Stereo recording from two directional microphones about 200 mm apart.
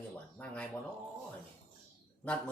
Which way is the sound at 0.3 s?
5° left (ahead or behind).